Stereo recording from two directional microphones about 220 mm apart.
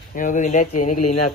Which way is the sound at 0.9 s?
90° left.